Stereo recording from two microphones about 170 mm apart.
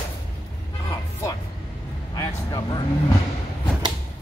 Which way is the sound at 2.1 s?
25° left (ahead or behind).